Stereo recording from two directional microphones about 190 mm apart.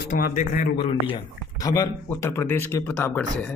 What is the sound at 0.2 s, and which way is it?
Speech, 45° left (ahead or behind).